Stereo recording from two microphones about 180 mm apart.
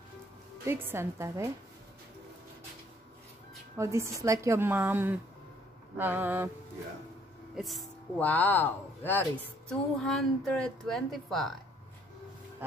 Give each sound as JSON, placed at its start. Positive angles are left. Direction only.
{"t": 0.7, "sound": "a woman's voice", "side_deg": -15}
{"t": 3.7, "sound": "a woman's voice", "side_deg": -15}
{"t": 7.5, "sound": "speech", "side_deg": 0}